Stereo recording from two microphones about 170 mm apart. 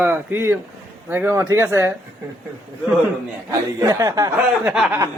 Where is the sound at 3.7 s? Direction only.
20° right (ahead or behind).